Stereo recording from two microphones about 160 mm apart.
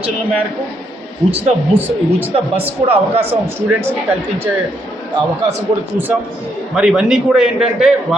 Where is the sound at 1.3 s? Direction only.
40° right (ahead or behind).